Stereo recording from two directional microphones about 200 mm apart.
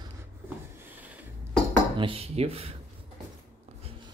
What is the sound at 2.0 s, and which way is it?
Speech, 30° right (ahead or behind).